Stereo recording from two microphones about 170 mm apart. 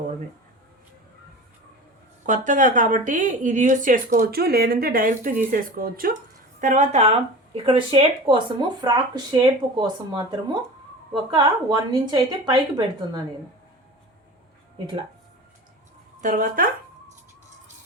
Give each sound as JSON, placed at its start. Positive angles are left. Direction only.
{"t": 2.2, "sound": "speech", "side_deg": -50}
{"t": 6.6, "sound": "a woman's voice", "side_deg": -45}
{"t": 16.2, "sound": "speech", "side_deg": -50}